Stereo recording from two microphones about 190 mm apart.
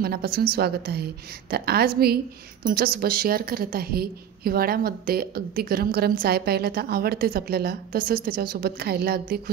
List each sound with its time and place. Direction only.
0.0 s a woman's voice: 55° right (ahead or behind)